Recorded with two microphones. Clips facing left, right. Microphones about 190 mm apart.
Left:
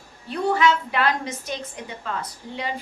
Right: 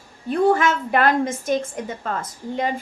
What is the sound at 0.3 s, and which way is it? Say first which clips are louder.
A woman's voice: right 3 dB; 50° right (ahead or behind).